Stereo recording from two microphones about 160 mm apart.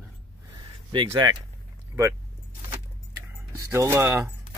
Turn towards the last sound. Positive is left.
turn(degrees=-15)  # may be behind; listen again after turning